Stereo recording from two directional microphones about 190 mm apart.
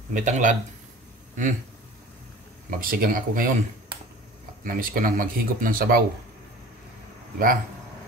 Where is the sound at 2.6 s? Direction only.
50° right (ahead or behind).